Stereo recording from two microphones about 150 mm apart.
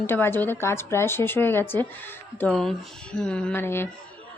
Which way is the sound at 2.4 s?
5° left (ahead or behind).